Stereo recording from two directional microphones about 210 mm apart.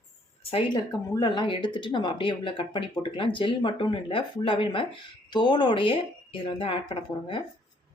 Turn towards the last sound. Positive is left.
turn(degrees=25)  # may be behind; listen again after turning